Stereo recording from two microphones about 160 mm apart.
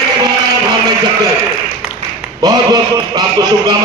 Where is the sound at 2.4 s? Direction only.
25° right (ahead or behind).